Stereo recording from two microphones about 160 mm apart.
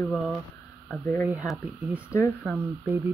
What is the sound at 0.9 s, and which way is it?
Speech, 10° left (ahead or behind).